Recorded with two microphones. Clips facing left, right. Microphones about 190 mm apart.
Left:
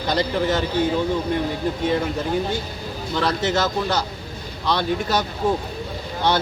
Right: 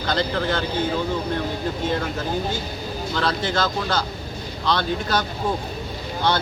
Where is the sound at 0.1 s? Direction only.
15° left (ahead or behind).